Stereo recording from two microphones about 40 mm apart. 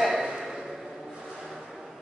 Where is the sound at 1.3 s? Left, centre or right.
Centre.